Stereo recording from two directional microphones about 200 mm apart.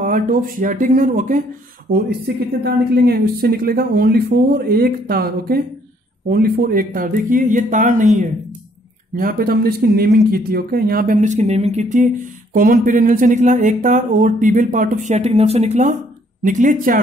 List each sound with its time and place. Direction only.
0.0 s speech: 40° right (ahead or behind)
1.9 s speech: 55° right (ahead or behind)